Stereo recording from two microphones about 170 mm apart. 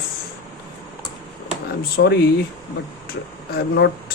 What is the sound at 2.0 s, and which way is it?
Speech, 90° left.